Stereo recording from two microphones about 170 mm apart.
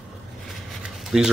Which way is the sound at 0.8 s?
5° right (ahead or behind).